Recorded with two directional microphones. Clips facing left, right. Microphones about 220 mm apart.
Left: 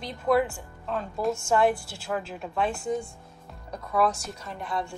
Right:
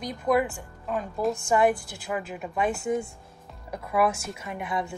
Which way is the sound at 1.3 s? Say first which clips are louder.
Right 1 dB; 15° right (ahead or behind).